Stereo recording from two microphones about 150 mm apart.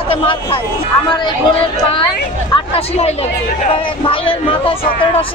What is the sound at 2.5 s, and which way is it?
Speech, 40° left (ahead or behind).